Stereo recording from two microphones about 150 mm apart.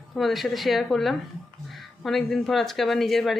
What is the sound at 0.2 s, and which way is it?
Speech, centre (ahead or behind).